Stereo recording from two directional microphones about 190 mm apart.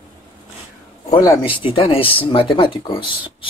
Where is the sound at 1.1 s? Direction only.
20° left (ahead or behind).